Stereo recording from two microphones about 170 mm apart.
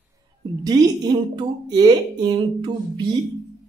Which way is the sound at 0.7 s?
20° right (ahead or behind).